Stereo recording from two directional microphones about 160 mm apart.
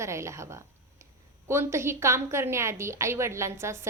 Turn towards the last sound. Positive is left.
turn(degrees=-15)  # may be behind; listen again after turning